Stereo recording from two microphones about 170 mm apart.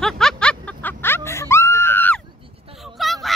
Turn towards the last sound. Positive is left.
turn(degrees=0)  # may be behind; listen again after turning